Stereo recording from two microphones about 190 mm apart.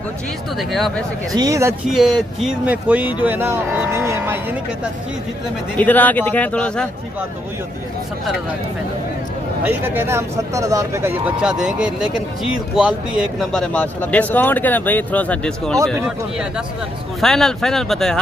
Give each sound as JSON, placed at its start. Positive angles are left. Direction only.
{"t": 0.6, "sound": "speech", "side_deg": 0}
{"t": 1.3, "sound": "speech", "side_deg": -20}
{"t": 1.9, "sound": "speech", "side_deg": 0}
{"t": 5.8, "sound": "speech", "side_deg": 10}
{"t": 9.7, "sound": "speech", "side_deg": -10}
{"t": 17.2, "sound": "speech", "side_deg": 0}